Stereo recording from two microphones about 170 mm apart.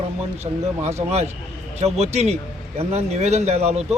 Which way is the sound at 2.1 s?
40° right (ahead or behind).